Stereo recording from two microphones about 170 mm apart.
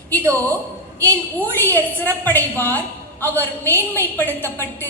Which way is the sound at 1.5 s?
10° left (ahead or behind).